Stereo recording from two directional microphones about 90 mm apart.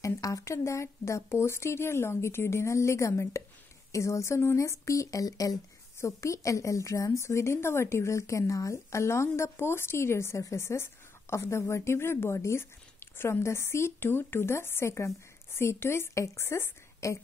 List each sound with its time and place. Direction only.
0.0 s speech: 35° left (ahead or behind)